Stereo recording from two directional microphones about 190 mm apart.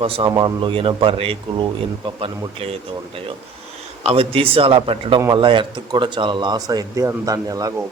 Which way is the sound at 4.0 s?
30° right (ahead or behind).